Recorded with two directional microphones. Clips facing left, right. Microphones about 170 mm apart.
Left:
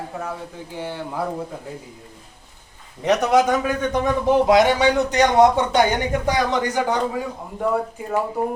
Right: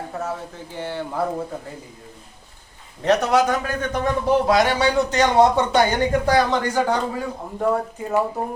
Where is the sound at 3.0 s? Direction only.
20° left (ahead or behind).